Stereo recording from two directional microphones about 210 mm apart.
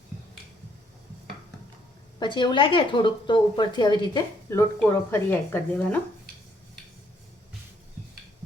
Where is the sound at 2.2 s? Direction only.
20° left (ahead or behind).